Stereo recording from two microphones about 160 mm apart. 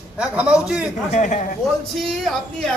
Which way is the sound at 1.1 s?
50° left (ahead or behind).